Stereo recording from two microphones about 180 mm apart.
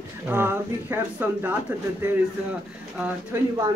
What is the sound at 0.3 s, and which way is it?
Speech, 10° right (ahead or behind).